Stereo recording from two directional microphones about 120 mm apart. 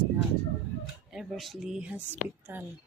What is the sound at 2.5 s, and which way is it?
Speech, 15° right (ahead or behind).